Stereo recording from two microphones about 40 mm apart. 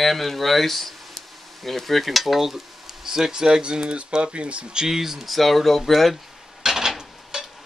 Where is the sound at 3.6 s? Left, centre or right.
Right.